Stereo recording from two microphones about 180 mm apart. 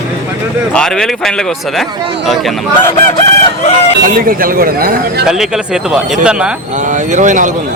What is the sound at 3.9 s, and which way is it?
Speech, 55° right (ahead or behind).